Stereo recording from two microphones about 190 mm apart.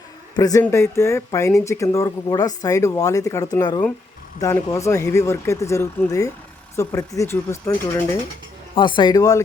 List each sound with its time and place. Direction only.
0.3 s speech: 20° left (ahead or behind)